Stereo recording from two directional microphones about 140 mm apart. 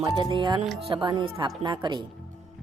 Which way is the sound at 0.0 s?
35° right (ahead or behind).